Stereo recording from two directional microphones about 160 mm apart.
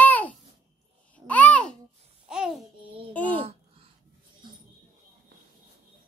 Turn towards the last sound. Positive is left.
turn(degrees=-30)  # may be behind; listen again after turning